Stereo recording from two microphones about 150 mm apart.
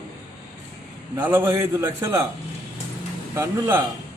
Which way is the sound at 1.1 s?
15° right (ahead or behind).